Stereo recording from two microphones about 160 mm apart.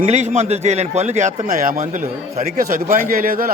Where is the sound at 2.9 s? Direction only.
60° right (ahead or behind).